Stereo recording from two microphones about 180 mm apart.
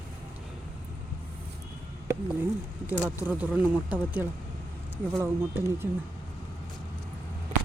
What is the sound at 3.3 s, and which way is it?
Speech, 10° right (ahead or behind).